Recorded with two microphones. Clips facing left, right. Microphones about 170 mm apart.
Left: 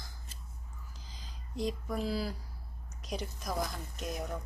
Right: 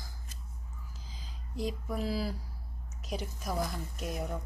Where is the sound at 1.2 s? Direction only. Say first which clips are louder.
Left 1 dB; 5° right (ahead or behind).